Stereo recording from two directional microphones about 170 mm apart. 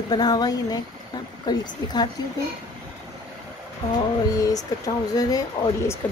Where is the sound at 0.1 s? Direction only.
25° left (ahead or behind).